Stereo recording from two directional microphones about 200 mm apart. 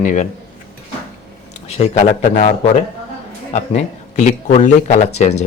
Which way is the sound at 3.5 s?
35° left (ahead or behind).